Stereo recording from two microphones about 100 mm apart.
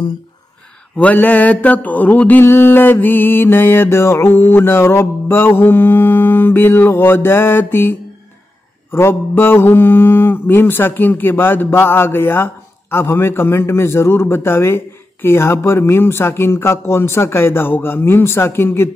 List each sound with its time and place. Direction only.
0.9 s mantra: 15° left (ahead or behind)